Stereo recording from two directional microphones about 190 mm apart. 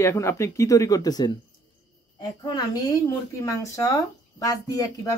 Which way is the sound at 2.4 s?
20° left (ahead or behind).